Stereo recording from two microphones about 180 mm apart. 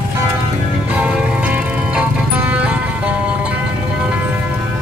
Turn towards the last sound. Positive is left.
turn(degrees=-5)  # may be behind; listen again after turning